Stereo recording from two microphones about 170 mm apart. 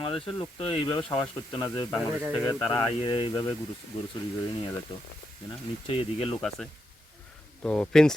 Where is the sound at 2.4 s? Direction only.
20° left (ahead or behind).